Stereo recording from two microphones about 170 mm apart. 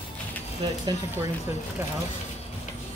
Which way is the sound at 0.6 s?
30° right (ahead or behind).